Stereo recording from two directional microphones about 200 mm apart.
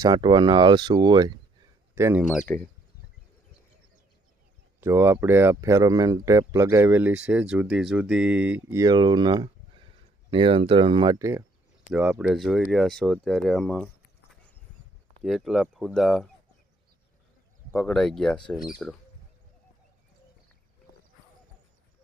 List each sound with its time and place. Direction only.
0.0 s speech: 20° right (ahead or behind)
2.5 s speech: 10° left (ahead or behind)
4.8 s speech: 10° right (ahead or behind)
11.9 s speech: 5° right (ahead or behind)
15.2 s speech: centre (ahead or behind)
17.7 s speech: 5° left (ahead or behind)